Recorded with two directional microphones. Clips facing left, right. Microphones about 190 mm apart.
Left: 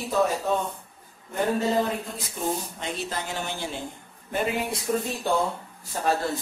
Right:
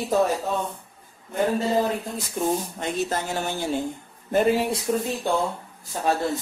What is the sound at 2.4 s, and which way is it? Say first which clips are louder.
Speech: right 4 dB; 50° right (ahead or behind).